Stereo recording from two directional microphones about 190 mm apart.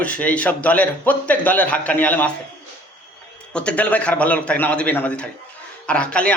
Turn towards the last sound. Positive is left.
turn(degrees=5)  # may be behind; listen again after turning